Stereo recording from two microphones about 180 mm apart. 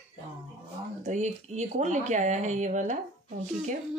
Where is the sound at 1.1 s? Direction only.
40° right (ahead or behind).